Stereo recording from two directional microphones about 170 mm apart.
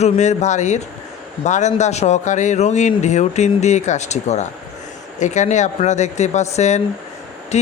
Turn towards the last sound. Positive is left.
turn(degrees=40)  # may be behind; listen again after turning